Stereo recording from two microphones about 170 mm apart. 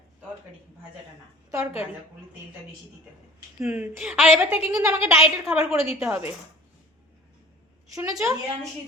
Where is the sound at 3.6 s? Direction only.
10° right (ahead or behind).